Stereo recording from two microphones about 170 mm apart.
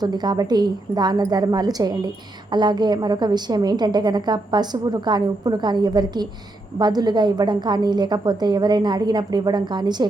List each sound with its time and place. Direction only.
0.0 s a woman's voice: 25° right (ahead or behind)